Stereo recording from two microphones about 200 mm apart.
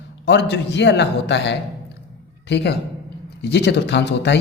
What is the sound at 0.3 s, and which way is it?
A man's voice, 60° left (ahead or behind).